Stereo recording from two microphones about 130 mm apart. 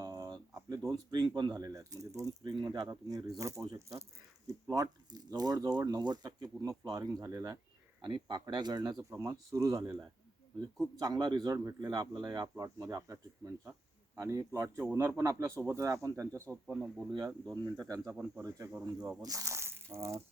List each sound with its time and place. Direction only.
0.0 s a sound: 30° right (ahead or behind)
1.4 s speech: 30° right (ahead or behind)
16.7 s speech: centre (ahead or behind)
17.2 s speech: 30° right (ahead or behind)